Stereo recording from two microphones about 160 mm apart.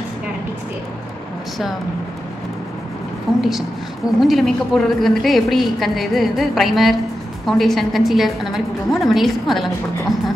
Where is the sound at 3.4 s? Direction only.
Centre (ahead or behind).